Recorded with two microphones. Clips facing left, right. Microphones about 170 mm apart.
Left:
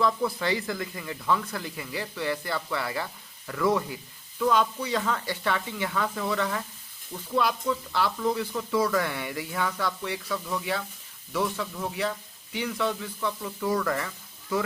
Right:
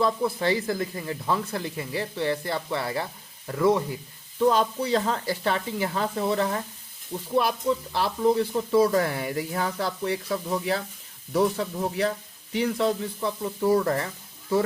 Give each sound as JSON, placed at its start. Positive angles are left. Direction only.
{"t": 0.0, "sound": "speech", "side_deg": -25}